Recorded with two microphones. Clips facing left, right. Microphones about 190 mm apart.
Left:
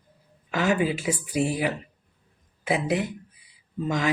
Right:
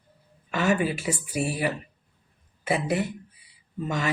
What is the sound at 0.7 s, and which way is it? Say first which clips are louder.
Speech: left 1 dB; 15° left (ahead or behind).